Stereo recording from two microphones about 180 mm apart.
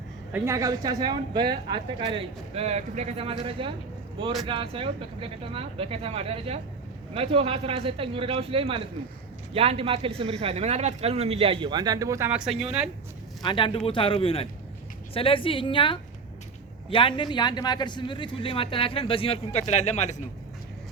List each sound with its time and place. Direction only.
0.3 s a man's voice: 15° right (ahead or behind)
13.4 s speech: 25° left (ahead or behind)